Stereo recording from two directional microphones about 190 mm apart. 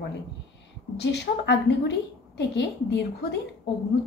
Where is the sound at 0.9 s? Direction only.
65° left (ahead or behind).